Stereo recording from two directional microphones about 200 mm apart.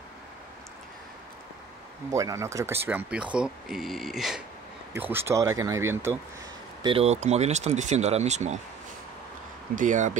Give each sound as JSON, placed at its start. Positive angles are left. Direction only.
{"t": 2.0, "sound": "speech", "side_deg": -15}
{"t": 6.8, "sound": "speech", "side_deg": -30}
{"t": 9.8, "sound": "speech", "side_deg": -40}